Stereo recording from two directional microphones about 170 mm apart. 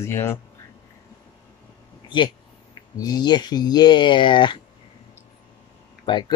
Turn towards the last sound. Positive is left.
turn(degrees=30)  # may be behind; listen again after turning